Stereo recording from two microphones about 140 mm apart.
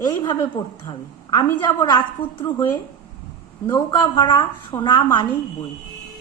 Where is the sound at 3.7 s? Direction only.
30° left (ahead or behind).